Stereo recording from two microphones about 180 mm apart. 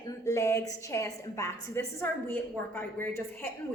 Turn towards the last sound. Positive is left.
turn(degrees=10)  # may be behind; listen again after turning